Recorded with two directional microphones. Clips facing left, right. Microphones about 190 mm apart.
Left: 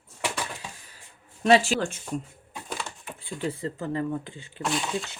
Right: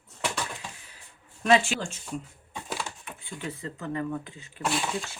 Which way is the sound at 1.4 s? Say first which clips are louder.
Left 3 dB; 35° left (ahead or behind).